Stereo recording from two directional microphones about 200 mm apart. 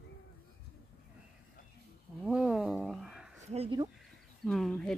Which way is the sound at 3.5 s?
30° right (ahead or behind).